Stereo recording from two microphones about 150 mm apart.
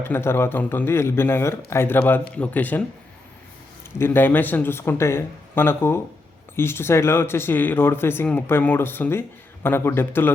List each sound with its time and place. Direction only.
0.0 s speech: 15° left (ahead or behind)
3.9 s speech: 15° left (ahead or behind)